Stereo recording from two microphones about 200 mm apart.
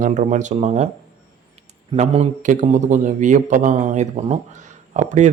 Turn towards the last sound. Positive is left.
turn(degrees=-35)  # may be behind; listen again after turning